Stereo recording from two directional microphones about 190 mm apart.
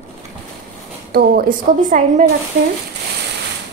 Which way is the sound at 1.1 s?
50° right (ahead or behind).